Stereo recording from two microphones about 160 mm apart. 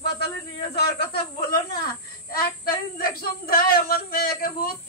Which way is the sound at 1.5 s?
70° left (ahead or behind).